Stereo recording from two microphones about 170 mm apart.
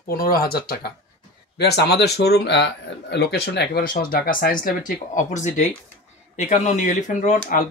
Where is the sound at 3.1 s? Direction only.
75° left (ahead or behind); by 4.7 s 55° left (ahead or behind).